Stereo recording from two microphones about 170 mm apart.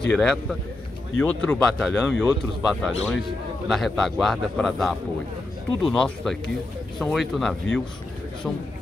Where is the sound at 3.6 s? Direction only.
Centre (ahead or behind).